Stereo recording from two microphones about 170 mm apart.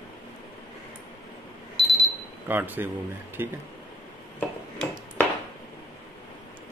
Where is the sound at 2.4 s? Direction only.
10° right (ahead or behind).